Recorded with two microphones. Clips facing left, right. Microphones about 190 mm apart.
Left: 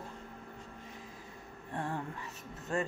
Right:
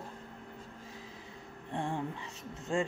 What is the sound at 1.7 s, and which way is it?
Speech, 25° right (ahead or behind).